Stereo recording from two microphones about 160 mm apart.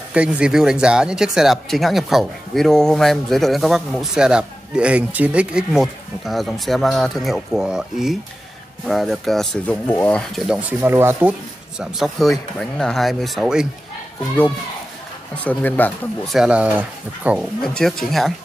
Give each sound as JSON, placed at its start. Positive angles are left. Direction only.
{"t": 0.1, "sound": "speech", "side_deg": -5}
{"t": 10.8, "sound": "speech", "side_deg": -15}
{"t": 11.8, "sound": "speech", "side_deg": 0}
{"t": 15.4, "sound": "speech", "side_deg": 10}
{"t": 16.3, "sound": "speech", "side_deg": -5}
{"t": 17.6, "sound": "speech", "side_deg": 0}